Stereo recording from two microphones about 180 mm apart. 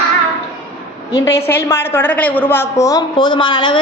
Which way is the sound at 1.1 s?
15° left (ahead or behind).